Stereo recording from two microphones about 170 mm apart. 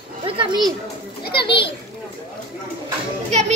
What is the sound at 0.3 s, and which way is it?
Speech, 30° right (ahead or behind).